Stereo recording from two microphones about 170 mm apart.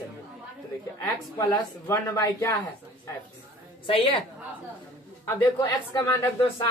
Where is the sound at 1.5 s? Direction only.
20° left (ahead or behind).